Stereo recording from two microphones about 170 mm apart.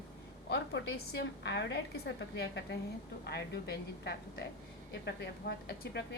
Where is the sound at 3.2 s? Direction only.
75° left (ahead or behind).